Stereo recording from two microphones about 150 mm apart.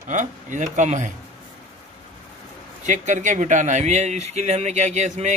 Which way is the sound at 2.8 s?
55° right (ahead or behind).